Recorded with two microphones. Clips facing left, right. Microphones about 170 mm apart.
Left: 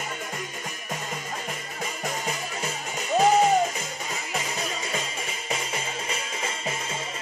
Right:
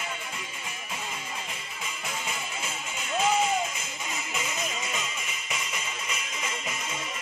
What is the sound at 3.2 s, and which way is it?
Music, 40° left (ahead or behind).